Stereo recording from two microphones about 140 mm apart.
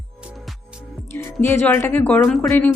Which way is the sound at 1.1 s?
20° left (ahead or behind).